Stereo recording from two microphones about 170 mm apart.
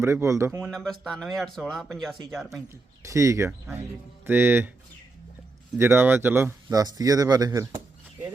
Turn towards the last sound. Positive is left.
turn(degrees=-20)  # may be behind; listen again after turning